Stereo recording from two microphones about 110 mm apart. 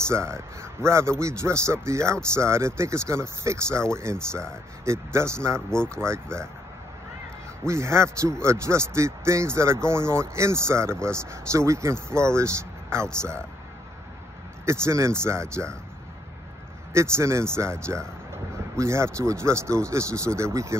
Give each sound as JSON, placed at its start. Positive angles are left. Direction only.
{"t": 0.1, "sound": "a man's voice", "side_deg": -25}
{"t": 5.7, "sound": "speech", "side_deg": 5}
{"t": 6.0, "sound": "a man's voice", "side_deg": -25}
{"t": 7.6, "sound": "a man's voice", "side_deg": -25}
{"t": 14.7, "sound": "a man's voice", "side_deg": -25}
{"t": 16.9, "sound": "a man's voice", "side_deg": -25}